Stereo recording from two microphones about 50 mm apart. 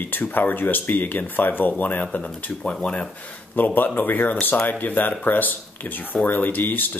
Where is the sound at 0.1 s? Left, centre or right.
Left.